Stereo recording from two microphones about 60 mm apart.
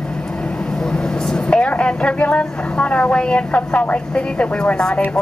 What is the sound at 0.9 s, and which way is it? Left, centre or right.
A woman's voice, centre.